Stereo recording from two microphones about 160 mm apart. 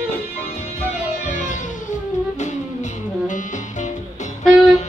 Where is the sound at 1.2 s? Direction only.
50° left (ahead or behind).